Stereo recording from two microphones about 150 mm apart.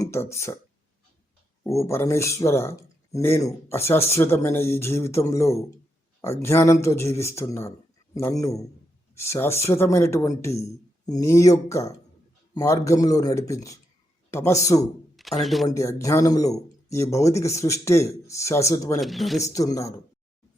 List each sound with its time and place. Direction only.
0.0 s speech: 15° left (ahead or behind)
1.6 s speech: 20° left (ahead or behind)
15.1 s speech: centre (ahead or behind)
15.7 s speech: 20° left (ahead or behind)
18.9 s speech: centre (ahead or behind)
19.5 s speech: 20° left (ahead or behind)